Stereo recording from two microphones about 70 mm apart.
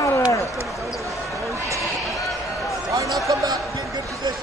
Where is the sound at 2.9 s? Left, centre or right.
Right.